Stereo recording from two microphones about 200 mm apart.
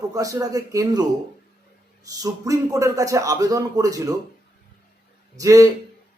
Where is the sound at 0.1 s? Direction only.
15° right (ahead or behind).